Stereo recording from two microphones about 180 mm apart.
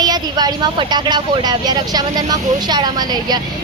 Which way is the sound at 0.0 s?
20° right (ahead or behind).